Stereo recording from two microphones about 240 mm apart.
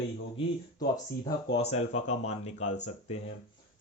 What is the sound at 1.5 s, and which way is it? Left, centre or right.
Speech, left.